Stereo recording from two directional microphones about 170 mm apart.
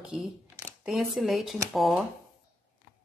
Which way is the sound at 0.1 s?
5° right (ahead or behind).